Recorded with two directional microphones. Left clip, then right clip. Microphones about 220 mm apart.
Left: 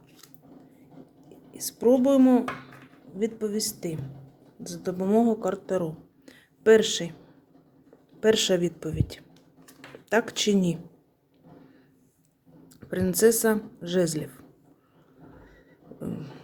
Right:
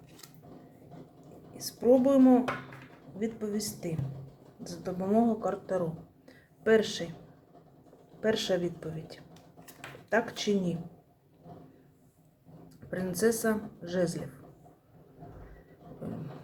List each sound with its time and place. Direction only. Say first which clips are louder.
1.5 s speech: left 2 dB; 45° left (ahead or behind)
6.2 s a sound: left 8 dB; 45° left (ahead or behind)
8.2 s speech: left 7 dB; 45° left (ahead or behind)
12.6 s speech: left 7 dB; 45° left (ahead or behind)